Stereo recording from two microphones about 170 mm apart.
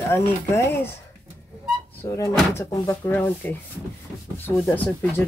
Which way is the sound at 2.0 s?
15° left (ahead or behind).